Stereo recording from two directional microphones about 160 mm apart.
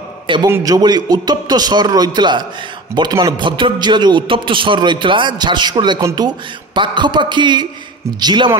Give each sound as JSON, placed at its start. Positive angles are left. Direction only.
{"t": 0.5, "sound": "a man's voice", "side_deg": -20}